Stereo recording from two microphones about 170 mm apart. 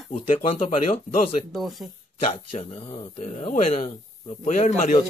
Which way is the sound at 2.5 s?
30° left (ahead or behind).